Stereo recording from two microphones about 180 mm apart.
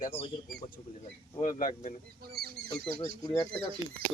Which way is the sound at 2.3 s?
60° right (ahead or behind).